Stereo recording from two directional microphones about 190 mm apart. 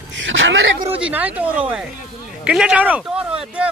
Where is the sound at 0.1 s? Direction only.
75° right (ahead or behind).